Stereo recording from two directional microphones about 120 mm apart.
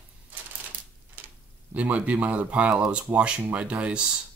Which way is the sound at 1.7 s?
10° right (ahead or behind).